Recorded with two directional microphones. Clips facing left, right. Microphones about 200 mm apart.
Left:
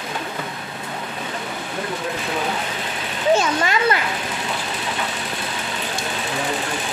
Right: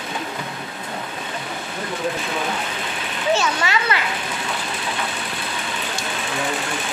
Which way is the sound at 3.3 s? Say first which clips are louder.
Left 2 dB; 50° left (ahead or behind).